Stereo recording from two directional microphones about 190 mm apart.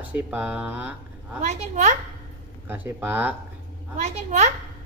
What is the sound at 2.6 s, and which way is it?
Speech, 10° right (ahead or behind).